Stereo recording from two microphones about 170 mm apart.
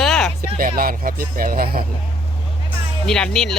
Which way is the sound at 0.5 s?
60° right (ahead or behind).